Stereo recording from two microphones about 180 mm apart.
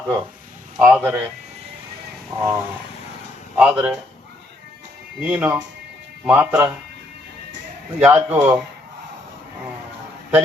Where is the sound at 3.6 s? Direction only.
5° right (ahead or behind).